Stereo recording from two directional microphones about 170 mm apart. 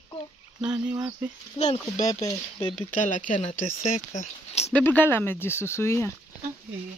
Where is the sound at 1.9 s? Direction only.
20° left (ahead or behind).